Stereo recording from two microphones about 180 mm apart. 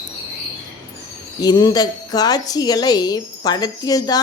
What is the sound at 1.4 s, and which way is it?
A woman's voice, 20° left (ahead or behind).